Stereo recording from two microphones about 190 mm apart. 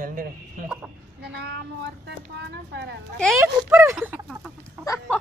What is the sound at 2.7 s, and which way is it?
Speech, 65° right (ahead or behind).